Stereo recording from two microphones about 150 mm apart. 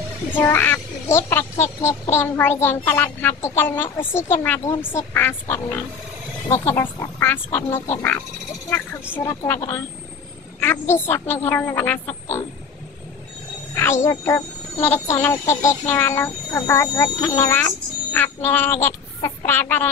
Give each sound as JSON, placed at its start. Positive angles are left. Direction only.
{"t": 0.3, "sound": "speech", "side_deg": 15}
{"t": 13.7, "sound": "speech", "side_deg": 15}